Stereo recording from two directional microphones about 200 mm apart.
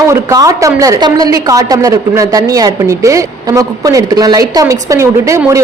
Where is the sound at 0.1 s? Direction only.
15° right (ahead or behind).